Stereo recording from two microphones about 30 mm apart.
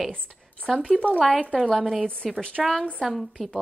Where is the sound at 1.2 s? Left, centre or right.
Right.